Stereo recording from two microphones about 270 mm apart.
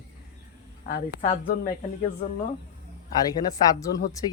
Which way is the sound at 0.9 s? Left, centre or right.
Left.